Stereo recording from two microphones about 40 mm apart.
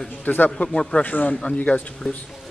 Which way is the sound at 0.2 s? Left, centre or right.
Left.